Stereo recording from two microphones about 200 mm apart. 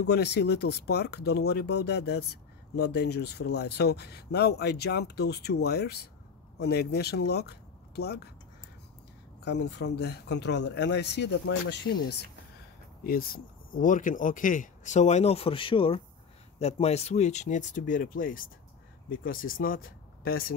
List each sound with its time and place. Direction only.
0.0 s speech: 55° left (ahead or behind)
9.4 s speech: 55° left (ahead or behind)